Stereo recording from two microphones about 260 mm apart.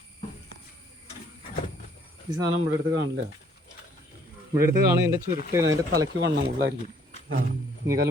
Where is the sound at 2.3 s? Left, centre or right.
Centre.